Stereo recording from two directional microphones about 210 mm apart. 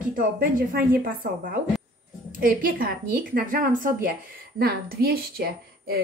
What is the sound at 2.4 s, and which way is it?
A woman's voice, 40° right (ahead or behind).